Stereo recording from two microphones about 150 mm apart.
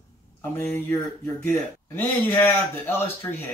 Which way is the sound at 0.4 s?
15° left (ahead or behind).